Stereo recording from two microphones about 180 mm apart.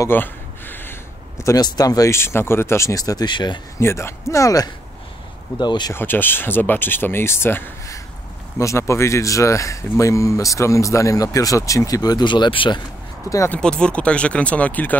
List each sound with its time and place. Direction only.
0.0 s a sound: 10° left (ahead or behind)
1.4 s speech: 20° left (ahead or behind)
3.8 s speech: 15° left (ahead or behind)
5.9 s speech: 10° left (ahead or behind); by 12.8 s 25° left (ahead or behind)
13.3 s speech: 15° left (ahead or behind)
13.6 s speech: 5° left (ahead or behind)